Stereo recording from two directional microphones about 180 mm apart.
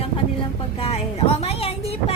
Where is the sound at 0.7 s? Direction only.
35° left (ahead or behind).